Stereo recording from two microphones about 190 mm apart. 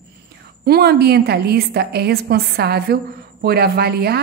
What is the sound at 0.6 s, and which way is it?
A woman's voice, 55° right (ahead or behind).